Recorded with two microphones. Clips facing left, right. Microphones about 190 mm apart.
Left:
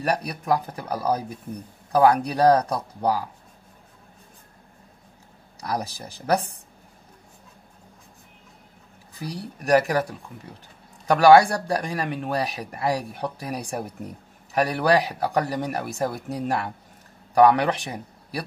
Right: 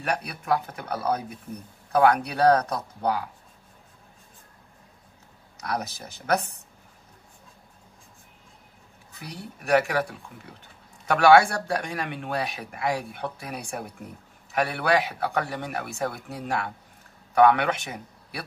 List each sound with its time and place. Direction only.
0.0 s speech: 35° left (ahead or behind)
5.6 s speech: 35° left (ahead or behind)
9.1 s speech: 35° left (ahead or behind)
11.1 s speech: 35° left (ahead or behind)